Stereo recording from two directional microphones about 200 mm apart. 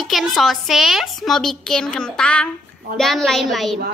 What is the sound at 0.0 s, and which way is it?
A woman's voice, centre (ahead or behind).